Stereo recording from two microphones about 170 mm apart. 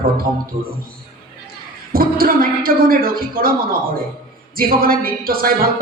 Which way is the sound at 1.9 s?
60° right (ahead or behind).